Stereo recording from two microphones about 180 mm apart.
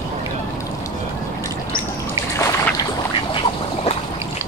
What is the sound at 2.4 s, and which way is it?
Boat, 15° left (ahead or behind).